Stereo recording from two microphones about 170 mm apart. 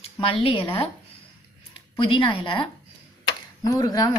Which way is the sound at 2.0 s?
30° left (ahead or behind).